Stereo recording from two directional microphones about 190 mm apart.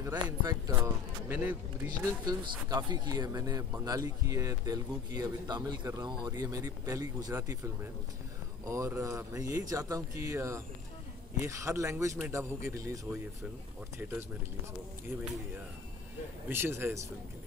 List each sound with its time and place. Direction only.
0.0 s speech: 15° right (ahead or behind)
1.3 s speech: 10° right (ahead or behind)
2.2 s speech: 20° right (ahead or behind)
8.6 s speech: 15° right (ahead or behind)
16.4 s speech: 10° right (ahead or behind)